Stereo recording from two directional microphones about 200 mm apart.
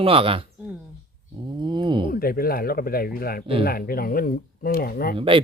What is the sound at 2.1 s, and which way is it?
Speech, 50° left (ahead or behind).